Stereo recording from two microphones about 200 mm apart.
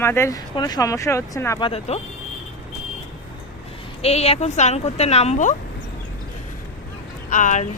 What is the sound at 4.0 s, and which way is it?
Speech, 30° left (ahead or behind).